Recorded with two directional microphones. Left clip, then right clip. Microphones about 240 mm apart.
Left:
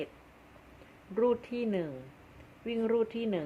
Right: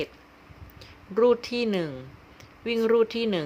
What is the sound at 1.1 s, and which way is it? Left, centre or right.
Speech, right.